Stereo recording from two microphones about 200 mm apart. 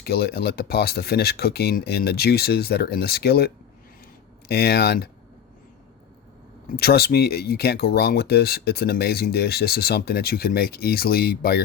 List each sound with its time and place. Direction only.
0.0 s speech: 55° left (ahead or behind)
6.7 s speech: 50° left (ahead or behind)